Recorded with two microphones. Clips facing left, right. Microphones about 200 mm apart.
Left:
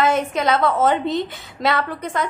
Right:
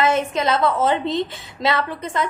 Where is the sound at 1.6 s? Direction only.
Centre (ahead or behind).